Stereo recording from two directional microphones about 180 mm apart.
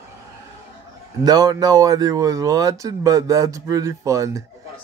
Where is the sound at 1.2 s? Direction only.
20° right (ahead or behind).